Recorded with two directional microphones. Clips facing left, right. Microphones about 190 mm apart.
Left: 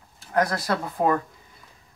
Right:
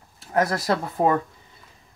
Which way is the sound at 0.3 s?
25° right (ahead or behind).